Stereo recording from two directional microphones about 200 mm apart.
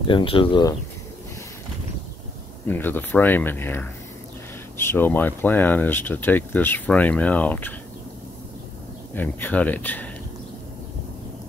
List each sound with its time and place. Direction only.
0.1 s speech: 25° left (ahead or behind)
2.6 s speech: 10° left (ahead or behind)
9.1 s speech: 10° left (ahead or behind)